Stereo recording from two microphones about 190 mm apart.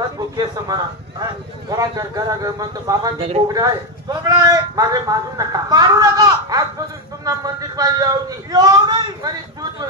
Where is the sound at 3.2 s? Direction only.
30° right (ahead or behind).